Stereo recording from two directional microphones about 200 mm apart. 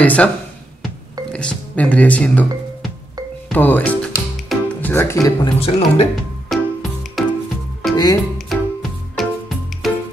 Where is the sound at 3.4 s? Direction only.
10° left (ahead or behind).